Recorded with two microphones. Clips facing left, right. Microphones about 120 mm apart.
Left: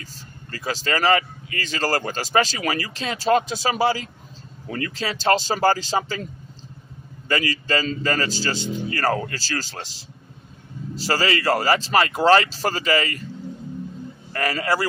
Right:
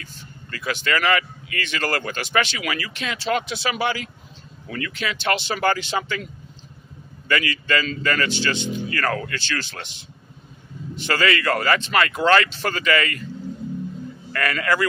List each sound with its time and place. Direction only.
0.0 s speech: 35° left (ahead or behind)
7.2 s speech: 30° left (ahead or behind)
11.1 s speech: 30° left (ahead or behind)
14.3 s speech: 30° left (ahead or behind)